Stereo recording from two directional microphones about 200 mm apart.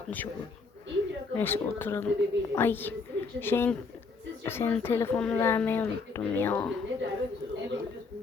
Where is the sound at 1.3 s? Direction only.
10° left (ahead or behind).